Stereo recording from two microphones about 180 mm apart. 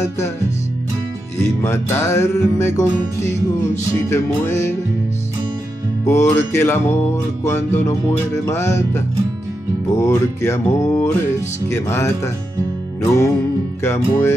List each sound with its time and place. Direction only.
1.4 s music: 15° left (ahead or behind)
6.0 s music: 15° left (ahead or behind)